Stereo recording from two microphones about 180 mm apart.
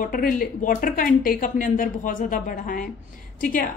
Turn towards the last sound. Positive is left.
turn(degrees=50)  # may be behind; listen again after turning